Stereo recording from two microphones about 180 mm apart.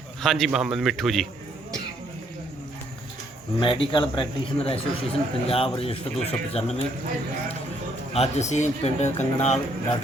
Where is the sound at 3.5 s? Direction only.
30° left (ahead or behind).